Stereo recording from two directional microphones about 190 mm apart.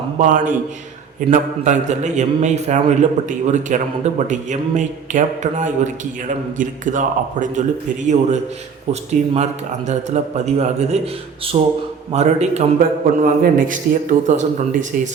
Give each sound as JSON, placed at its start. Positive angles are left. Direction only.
{"t": 0.2, "sound": "a man's voice", "side_deg": -45}